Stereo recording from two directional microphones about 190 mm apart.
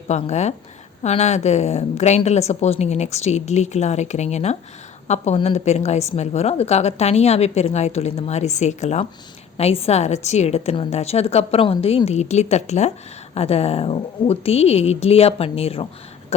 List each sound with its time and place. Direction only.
0.1 s a woman's voice: 35° left (ahead or behind)